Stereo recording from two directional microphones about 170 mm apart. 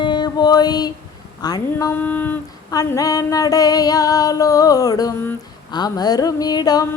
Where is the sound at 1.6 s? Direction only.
15° left (ahead or behind).